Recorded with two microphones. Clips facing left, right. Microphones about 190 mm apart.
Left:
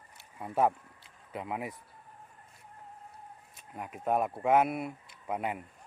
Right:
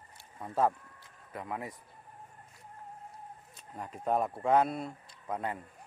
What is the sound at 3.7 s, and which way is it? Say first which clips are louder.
Speech: left 1 dB; 5° left (ahead or behind).